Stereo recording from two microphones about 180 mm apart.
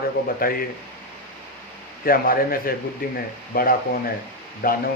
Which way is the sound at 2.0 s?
55° left (ahead or behind).